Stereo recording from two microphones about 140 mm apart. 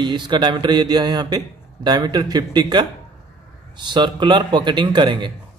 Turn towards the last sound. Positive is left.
turn(degrees=-35)  # may be behind; listen again after turning